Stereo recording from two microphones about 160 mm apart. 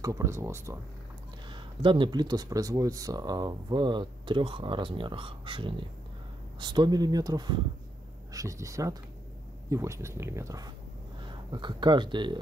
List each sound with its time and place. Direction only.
0.0 s speech: 20° right (ahead or behind)
1.5 s speech: 30° right (ahead or behind)